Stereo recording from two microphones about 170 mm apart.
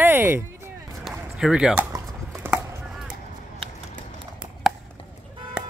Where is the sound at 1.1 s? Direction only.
Centre (ahead or behind).